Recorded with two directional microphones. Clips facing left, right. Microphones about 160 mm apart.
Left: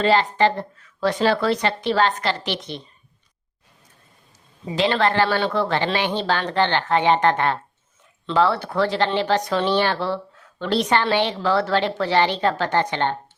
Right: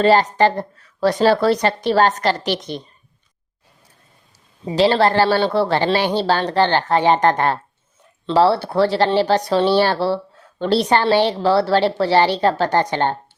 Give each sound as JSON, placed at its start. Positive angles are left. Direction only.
{"t": 0.0, "sound": "speech", "side_deg": -40}
{"t": 4.6, "sound": "speech", "side_deg": -35}